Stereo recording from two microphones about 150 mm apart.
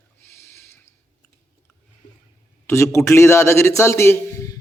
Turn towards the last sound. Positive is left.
turn(degrees=15)  # may be behind; listen again after turning